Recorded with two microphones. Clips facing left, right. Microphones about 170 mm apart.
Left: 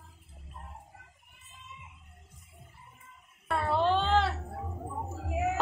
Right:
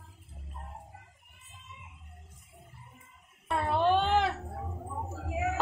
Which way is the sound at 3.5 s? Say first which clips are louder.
Right 1 dB; 15° right (ahead or behind).